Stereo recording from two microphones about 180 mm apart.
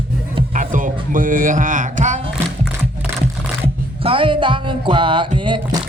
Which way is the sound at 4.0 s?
30° right (ahead or behind).